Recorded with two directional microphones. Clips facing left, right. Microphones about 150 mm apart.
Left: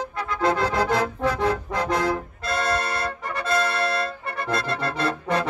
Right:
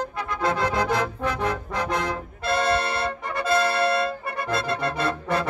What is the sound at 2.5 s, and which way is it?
Music, 20° right (ahead or behind).